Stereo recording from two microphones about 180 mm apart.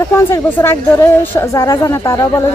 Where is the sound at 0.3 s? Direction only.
10° left (ahead or behind).